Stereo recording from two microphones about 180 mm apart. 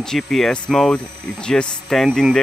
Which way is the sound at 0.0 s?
5° left (ahead or behind).